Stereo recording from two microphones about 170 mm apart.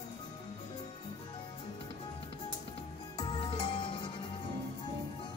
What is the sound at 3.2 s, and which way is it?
Music, 30° left (ahead or behind).